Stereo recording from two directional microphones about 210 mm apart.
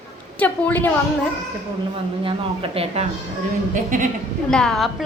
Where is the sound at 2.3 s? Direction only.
25° right (ahead or behind).